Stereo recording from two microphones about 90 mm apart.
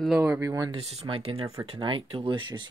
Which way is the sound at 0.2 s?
30° right (ahead or behind).